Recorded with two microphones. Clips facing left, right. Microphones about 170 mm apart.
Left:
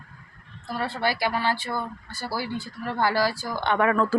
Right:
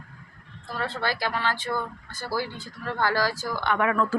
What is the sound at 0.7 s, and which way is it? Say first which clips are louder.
Speech: left 2 dB; 10° left (ahead or behind).